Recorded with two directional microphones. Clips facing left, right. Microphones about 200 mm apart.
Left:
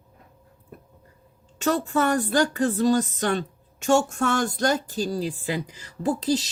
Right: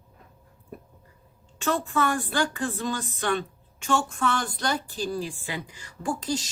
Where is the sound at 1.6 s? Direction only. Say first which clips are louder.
Left 3 dB; 40° left (ahead or behind).